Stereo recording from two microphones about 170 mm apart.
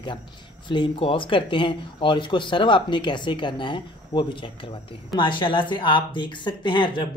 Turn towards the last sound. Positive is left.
turn(degrees=25)  # may be behind; listen again after turning